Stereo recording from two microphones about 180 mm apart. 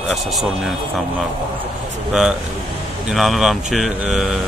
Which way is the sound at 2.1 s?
5° right (ahead or behind).